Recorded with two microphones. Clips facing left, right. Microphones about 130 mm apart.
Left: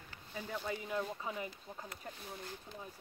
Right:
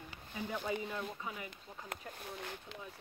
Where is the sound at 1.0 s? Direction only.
30° left (ahead or behind).